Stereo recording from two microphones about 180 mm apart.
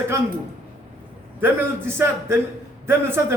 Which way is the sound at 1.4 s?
10° right (ahead or behind).